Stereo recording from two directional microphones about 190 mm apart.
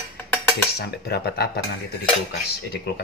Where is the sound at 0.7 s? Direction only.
55° left (ahead or behind).